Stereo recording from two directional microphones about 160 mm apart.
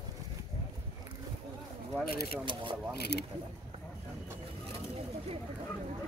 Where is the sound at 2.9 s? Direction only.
90° left.